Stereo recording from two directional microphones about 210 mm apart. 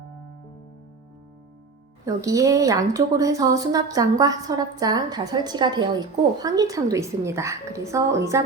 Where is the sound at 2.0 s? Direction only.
15° right (ahead or behind).